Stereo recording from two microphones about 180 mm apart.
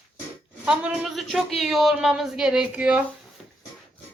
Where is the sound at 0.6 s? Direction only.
5° right (ahead or behind).